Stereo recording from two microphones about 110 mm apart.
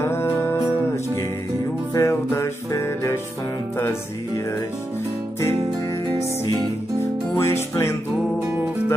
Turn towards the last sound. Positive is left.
turn(degrees=25)  # may be behind; listen again after turning